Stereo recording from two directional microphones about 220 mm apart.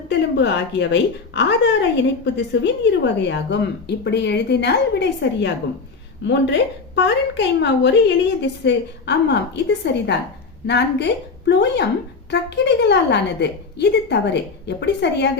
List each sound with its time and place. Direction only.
0.1 s a woman's voice: 50° left (ahead or behind)